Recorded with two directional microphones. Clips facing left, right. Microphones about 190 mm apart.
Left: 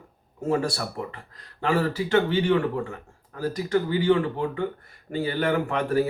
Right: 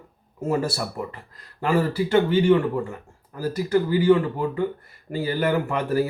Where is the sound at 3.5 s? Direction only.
5° right (ahead or behind).